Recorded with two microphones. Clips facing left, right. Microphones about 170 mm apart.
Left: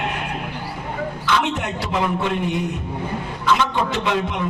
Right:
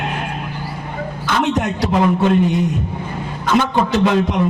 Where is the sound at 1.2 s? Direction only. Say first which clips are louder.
Right 5 dB; 45° right (ahead or behind).